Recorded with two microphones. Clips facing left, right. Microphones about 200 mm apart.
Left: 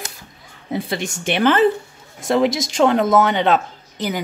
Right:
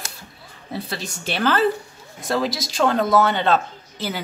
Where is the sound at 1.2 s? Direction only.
20° left (ahead or behind).